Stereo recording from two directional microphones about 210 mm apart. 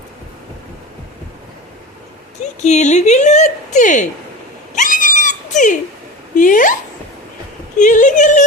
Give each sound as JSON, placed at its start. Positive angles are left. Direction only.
{"t": 2.6, "sound": "a woman's voice", "side_deg": 35}
{"t": 4.7, "sound": "cat", "side_deg": 40}
{"t": 6.3, "sound": "a woman's voice", "side_deg": 40}
{"t": 7.8, "sound": "a woman's voice", "side_deg": 35}